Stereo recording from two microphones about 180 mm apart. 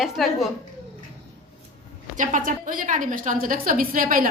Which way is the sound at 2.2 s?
45° right (ahead or behind).